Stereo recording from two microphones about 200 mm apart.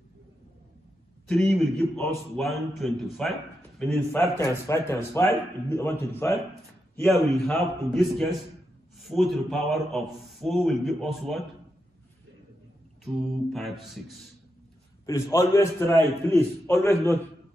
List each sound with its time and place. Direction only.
1.2 s a man's voice: centre (ahead or behind)
3.9 s a man's voice: 10° left (ahead or behind)
13.0 s a man's voice: centre (ahead or behind)
15.0 s a man's voice: 15° left (ahead or behind)